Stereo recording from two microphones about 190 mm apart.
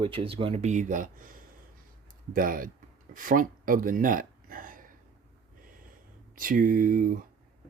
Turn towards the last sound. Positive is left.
turn(degrees=-45)  # may be behind; listen again after turning